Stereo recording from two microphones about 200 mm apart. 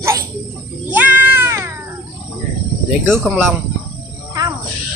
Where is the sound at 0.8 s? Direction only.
10° right (ahead or behind).